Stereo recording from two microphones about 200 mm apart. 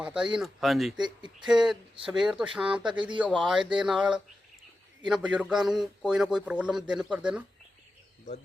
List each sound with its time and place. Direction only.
0.0 s a man's voice: 5° right (ahead or behind)